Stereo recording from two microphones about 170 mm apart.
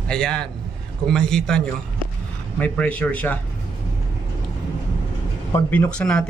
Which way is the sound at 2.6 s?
10° left (ahead or behind).